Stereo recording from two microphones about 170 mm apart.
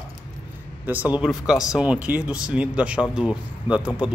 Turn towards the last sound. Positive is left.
turn(degrees=-5)  # may be behind; listen again after turning